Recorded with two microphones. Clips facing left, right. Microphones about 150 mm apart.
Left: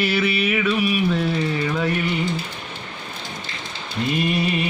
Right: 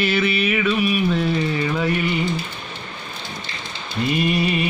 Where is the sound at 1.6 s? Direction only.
5° right (ahead or behind).